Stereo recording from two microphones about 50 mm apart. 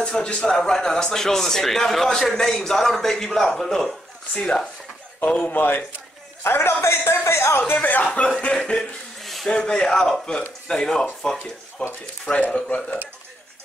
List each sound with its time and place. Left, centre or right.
0.0 s speech: centre
4.3 s speech: centre
5.2 s a man's voice: left
6.4 s a man's voice: left
7.7 s speech: left
8.7 s chuckle: centre
9.5 s speech: centre